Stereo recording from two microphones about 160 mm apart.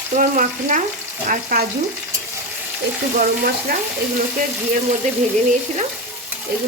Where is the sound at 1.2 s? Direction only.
60° right (ahead or behind).